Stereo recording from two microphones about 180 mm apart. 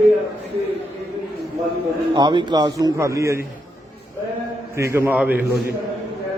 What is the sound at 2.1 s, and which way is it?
A man's voice, 25° right (ahead or behind).